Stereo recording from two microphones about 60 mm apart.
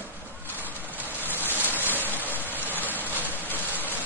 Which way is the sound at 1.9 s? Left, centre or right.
Left.